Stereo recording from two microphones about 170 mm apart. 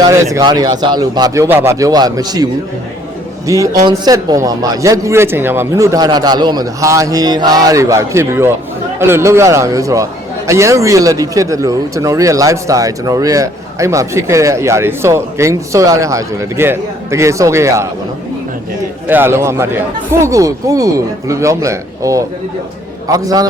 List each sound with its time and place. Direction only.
0.3 s a man's voice: 20° right (ahead or behind)
19.0 s a man's voice: 10° right (ahead or behind)